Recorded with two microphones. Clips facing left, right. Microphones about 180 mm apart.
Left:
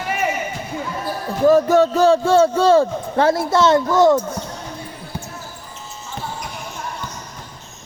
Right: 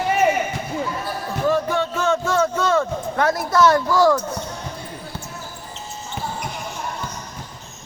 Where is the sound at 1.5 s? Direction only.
40° left (ahead or behind); by 4.2 s 20° left (ahead or behind).